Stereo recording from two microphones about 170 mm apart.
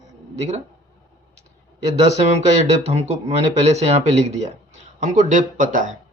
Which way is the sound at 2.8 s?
40° right (ahead or behind).